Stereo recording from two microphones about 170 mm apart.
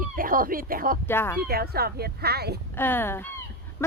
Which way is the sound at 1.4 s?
65° right (ahead or behind).